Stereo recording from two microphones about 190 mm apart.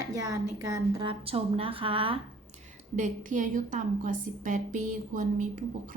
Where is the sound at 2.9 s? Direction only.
40° right (ahead or behind).